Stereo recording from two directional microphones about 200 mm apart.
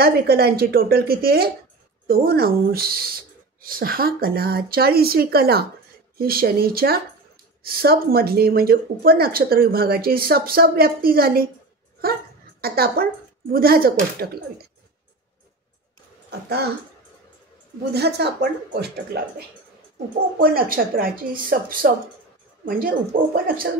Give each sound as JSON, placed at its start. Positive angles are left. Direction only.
{"t": 0.0, "sound": "speech", "side_deg": -50}
{"t": 16.3, "sound": "speech", "side_deg": -55}
{"t": 17.9, "sound": "speech", "side_deg": -55}
{"t": 20.3, "sound": "speech", "side_deg": -45}